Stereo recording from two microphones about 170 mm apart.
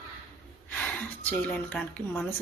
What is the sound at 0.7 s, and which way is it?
A woman's voice, 10° left (ahead or behind).